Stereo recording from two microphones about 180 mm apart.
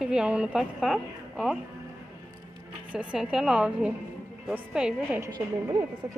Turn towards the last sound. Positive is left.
turn(degrees=-25)  # may be behind; listen again after turning